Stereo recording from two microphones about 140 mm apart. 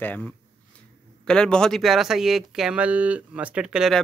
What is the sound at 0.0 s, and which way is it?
Speech, 15° left (ahead or behind).